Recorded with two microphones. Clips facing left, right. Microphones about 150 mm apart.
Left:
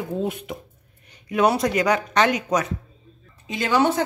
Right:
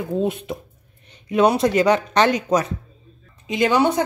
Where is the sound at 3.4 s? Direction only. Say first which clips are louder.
Right 3 dB; 15° right (ahead or behind).